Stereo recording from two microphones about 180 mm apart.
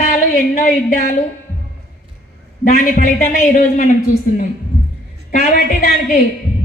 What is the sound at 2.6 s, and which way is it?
A man's voice, 50° left (ahead or behind).